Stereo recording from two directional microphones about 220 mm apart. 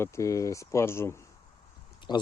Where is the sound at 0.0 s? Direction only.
15° left (ahead or behind).